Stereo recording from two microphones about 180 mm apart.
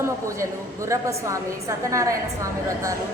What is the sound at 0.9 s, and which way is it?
A woman's voice, 15° right (ahead or behind).